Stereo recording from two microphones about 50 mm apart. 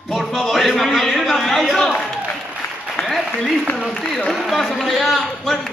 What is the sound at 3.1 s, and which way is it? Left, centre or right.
A man's voice, centre.